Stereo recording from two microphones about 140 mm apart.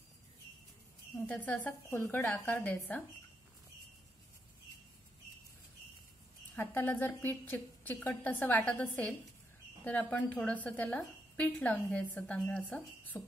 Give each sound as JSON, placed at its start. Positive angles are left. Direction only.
{"t": 1.2, "sound": "a woman's voice", "side_deg": 10}
{"t": 6.5, "sound": "a woman's voice", "side_deg": 15}